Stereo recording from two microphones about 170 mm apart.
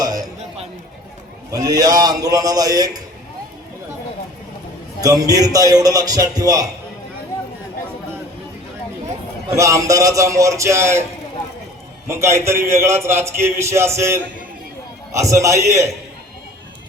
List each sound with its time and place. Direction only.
0.0 s a sound: 20° right (ahead or behind)
1.5 s a man's voice: 20° right (ahead or behind)
5.0 s a man's voice: 20° right (ahead or behind)
9.5 s a man's voice: 20° right (ahead or behind)
12.0 s a man's voice: 15° right (ahead or behind)